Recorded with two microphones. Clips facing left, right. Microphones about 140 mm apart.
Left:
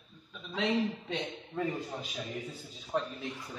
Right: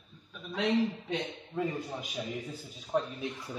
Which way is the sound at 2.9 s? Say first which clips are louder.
Right 2 dB; 10° right (ahead or behind).